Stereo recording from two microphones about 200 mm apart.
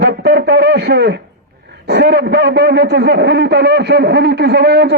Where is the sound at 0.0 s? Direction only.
55° right (ahead or behind).